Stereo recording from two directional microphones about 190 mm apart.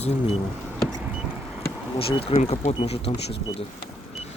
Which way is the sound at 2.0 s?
30° left (ahead or behind).